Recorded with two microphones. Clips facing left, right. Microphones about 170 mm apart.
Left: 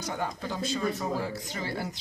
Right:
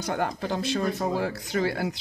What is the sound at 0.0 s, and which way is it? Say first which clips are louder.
Speech: right 5 dB; 65° right (ahead or behind).